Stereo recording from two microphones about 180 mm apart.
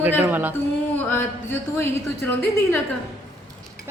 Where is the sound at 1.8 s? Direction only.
10° left (ahead or behind).